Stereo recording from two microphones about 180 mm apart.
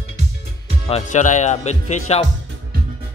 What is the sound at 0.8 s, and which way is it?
Speech, 40° left (ahead or behind).